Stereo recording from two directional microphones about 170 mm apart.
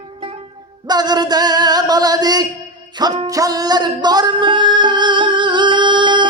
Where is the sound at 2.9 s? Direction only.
25° right (ahead or behind).